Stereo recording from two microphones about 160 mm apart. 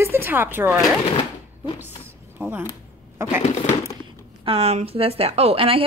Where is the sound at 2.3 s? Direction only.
10° right (ahead or behind).